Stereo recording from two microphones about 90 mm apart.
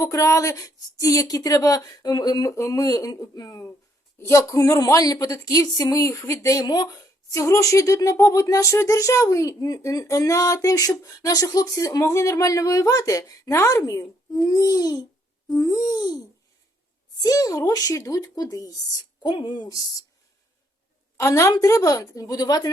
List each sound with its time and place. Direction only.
0.0 s a woman's voice: 35° left (ahead or behind)
4.2 s a woman's voice: 30° left (ahead or behind)
17.2 s speech: 40° left (ahead or behind)
19.2 s speech: 60° left (ahead or behind); by 20.1 s 45° left (ahead or behind)
21.2 s a woman's voice: 30° left (ahead or behind)